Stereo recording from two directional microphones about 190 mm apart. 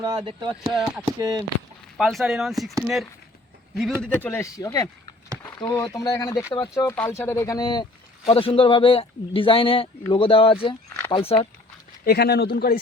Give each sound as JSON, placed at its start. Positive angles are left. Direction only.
{"t": 0.0, "sound": "speech", "side_deg": -20}
{"t": 0.7, "sound": "speech", "side_deg": 0}
{"t": 1.2, "sound": "speech", "side_deg": -20}
{"t": 2.0, "sound": "speech", "side_deg": 0}
{"t": 4.0, "sound": "speech", "side_deg": 10}
{"t": 12.0, "sound": "speech", "side_deg": 60}